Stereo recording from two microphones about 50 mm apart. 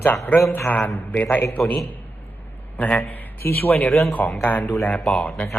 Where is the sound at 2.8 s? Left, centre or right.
Left.